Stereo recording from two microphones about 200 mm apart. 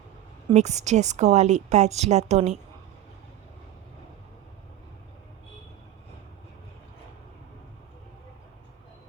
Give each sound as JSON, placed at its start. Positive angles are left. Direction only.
{"t": 0.5, "sound": "a woman's voice", "side_deg": -35}